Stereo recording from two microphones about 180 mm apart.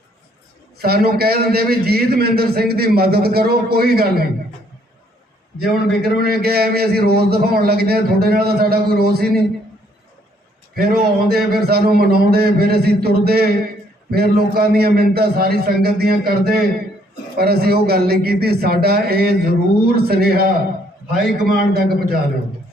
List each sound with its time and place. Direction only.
0.8 s a man's voice: 60° right (ahead or behind)
6.0 s a man's voice: 60° right (ahead or behind)
10.8 s a man's voice: 60° right (ahead or behind)